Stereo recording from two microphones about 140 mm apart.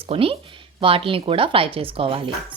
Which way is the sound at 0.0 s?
40° right (ahead or behind).